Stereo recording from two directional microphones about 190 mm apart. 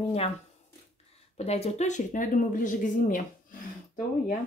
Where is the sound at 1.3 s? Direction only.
35° left (ahead or behind).